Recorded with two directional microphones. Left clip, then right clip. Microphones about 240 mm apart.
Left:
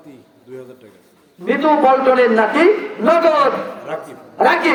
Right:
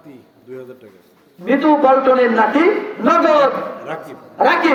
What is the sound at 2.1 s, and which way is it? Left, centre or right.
Speech, left.